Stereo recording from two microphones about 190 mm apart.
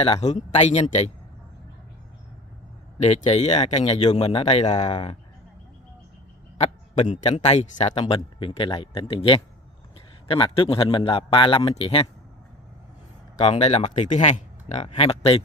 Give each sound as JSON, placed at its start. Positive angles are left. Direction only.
{"t": 0.0, "sound": "speech", "side_deg": 35}
{"t": 3.0, "sound": "speech", "side_deg": 35}
{"t": 6.6, "sound": "a man's voice", "side_deg": 35}
{"t": 13.4, "sound": "a man's voice", "side_deg": 35}